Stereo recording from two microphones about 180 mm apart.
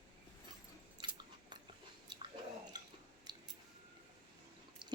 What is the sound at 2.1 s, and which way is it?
Chewing, 25° right (ahead or behind).